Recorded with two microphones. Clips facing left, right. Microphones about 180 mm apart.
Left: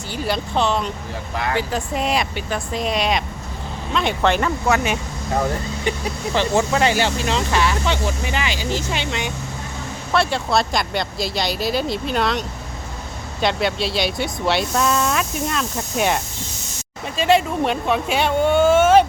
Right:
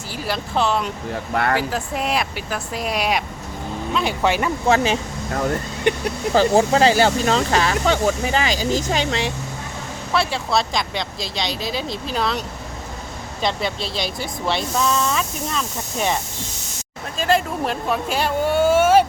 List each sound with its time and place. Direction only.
0.1 s speech: centre (ahead or behind)
1.3 s speech: 60° right (ahead or behind)
1.5 s speech: centre (ahead or behind)
4.6 s speech: 30° right (ahead or behind)
6.3 s speech: 35° right (ahead or behind)
10.1 s speech: centre (ahead or behind)
13.4 s speech: centre (ahead or behind)
17.2 s speech: centre (ahead or behind)